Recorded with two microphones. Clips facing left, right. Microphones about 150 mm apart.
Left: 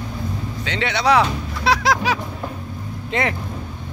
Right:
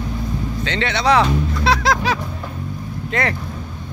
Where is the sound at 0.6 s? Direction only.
10° left (ahead or behind).